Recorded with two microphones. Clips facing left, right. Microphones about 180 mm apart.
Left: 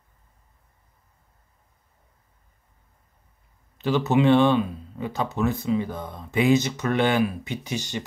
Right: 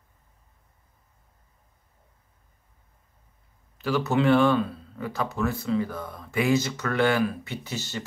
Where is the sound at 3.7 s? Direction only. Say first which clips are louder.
Left 3 dB; 20° left (ahead or behind).